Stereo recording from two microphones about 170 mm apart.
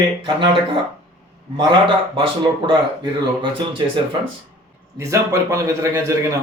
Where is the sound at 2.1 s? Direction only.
30° right (ahead or behind).